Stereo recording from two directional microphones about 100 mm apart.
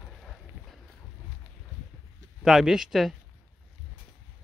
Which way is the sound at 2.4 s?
5° right (ahead or behind).